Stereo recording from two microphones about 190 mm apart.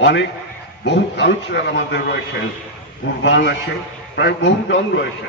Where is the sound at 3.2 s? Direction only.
70° left (ahead or behind).